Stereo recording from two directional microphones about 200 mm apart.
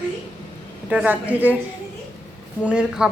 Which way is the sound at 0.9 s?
5° right (ahead or behind).